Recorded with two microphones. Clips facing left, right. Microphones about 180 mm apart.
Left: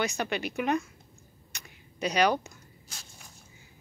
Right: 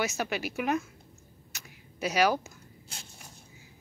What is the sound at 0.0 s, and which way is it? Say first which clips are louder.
Speech: left 1 dB; 5° right (ahead or behind).